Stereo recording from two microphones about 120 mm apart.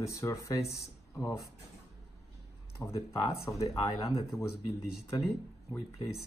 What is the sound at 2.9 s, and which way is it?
Speech, 25° left (ahead or behind).